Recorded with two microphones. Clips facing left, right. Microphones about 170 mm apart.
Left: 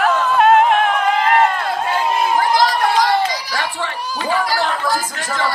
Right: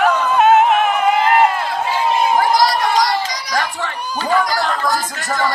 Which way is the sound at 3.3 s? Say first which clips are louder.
Right 2 dB; 45° right (ahead or behind).